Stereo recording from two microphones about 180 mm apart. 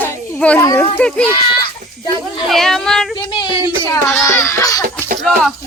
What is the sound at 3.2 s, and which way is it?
Speech, 25° left (ahead or behind).